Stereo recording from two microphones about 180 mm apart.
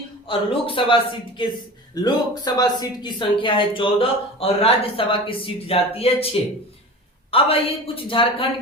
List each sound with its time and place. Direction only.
0.3 s a man's voice: 30° left (ahead or behind)
2.0 s speech: 20° left (ahead or behind)